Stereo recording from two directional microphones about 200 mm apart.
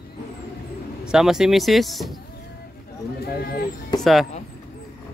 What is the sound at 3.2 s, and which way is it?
Speech, 50° left (ahead or behind).